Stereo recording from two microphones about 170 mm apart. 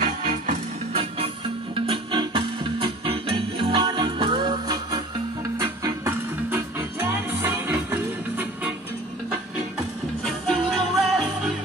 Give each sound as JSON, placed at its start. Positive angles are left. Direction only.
{"t": 0.5, "sound": "music", "side_deg": -35}
{"t": 10.2, "sound": "music", "side_deg": 5}